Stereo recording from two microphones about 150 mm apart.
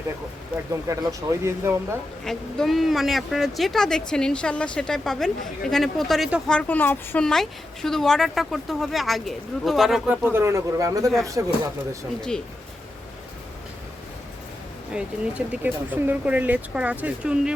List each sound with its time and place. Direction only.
0.5 s speech: 20° right (ahead or behind)
2.2 s a woman's voice: centre (ahead or behind); by 11.5 s 20° right (ahead or behind)
14.9 s speech: 10° right (ahead or behind)